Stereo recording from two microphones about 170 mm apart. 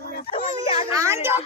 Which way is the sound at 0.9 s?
15° right (ahead or behind).